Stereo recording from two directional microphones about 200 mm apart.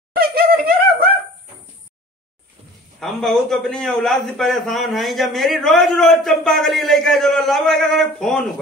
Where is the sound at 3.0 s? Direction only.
Centre (ahead or behind).